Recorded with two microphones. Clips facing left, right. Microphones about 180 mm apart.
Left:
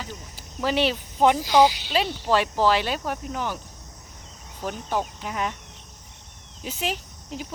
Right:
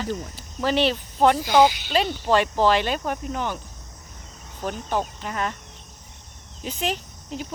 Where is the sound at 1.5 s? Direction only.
30° left (ahead or behind).